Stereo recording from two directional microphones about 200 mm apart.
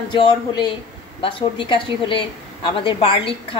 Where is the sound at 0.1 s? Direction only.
20° left (ahead or behind).